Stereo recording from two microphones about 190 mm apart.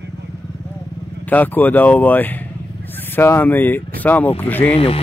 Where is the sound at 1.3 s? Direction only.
10° left (ahead or behind).